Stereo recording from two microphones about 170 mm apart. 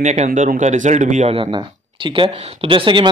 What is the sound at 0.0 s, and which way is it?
Speech, 45° right (ahead or behind).